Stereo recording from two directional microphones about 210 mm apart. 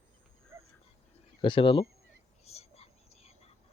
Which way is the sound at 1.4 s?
25° left (ahead or behind).